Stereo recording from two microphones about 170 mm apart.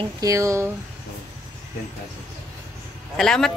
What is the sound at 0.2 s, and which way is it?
Speech, 20° right (ahead or behind).